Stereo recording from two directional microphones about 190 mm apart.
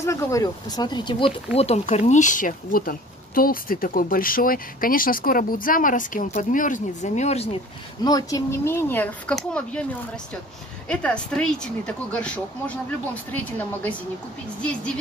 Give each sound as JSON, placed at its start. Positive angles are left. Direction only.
{"t": 0.0, "sound": "speech", "side_deg": 15}
{"t": 8.0, "sound": "speech", "side_deg": 20}